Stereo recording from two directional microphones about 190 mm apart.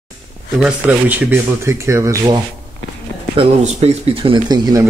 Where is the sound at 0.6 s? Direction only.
5° right (ahead or behind).